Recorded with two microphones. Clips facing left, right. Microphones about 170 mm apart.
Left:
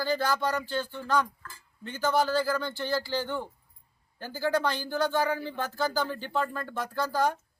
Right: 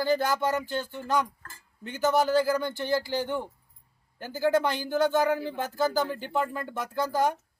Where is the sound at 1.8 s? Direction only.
20° right (ahead or behind).